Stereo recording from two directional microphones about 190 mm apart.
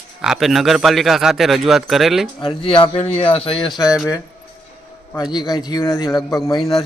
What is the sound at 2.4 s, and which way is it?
Speech, 25° left (ahead or behind).